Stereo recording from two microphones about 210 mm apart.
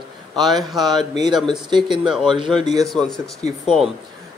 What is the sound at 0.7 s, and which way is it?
Speech, 20° right (ahead or behind).